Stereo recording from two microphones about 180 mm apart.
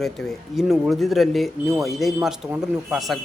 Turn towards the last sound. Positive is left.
turn(degrees=0)  # may be behind; listen again after turning